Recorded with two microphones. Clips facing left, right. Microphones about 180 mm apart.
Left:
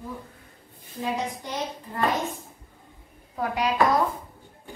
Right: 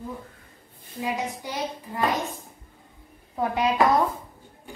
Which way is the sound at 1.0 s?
10° right (ahead or behind).